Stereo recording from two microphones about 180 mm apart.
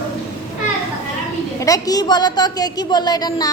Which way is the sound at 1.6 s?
20° left (ahead or behind).